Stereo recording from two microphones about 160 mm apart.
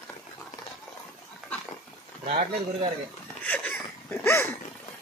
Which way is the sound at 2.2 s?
35° right (ahead or behind).